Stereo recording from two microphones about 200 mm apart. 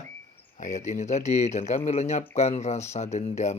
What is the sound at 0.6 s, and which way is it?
Speech, 35° left (ahead or behind).